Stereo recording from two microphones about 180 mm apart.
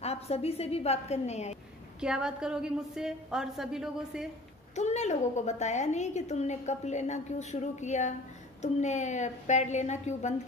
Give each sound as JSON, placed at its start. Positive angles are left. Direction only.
{"t": 0.0, "sound": "a woman's voice", "side_deg": 35}
{"t": 2.0, "sound": "a woman's voice", "side_deg": -5}
{"t": 4.7, "sound": "a woman's voice", "side_deg": 40}